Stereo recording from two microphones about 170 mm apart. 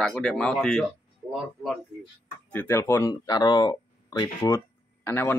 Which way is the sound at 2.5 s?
10° left (ahead or behind).